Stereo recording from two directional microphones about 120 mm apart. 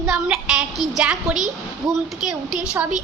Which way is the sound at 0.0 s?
5° right (ahead or behind).